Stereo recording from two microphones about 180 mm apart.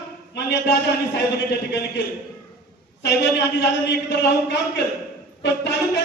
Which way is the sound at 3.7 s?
75° left (ahead or behind).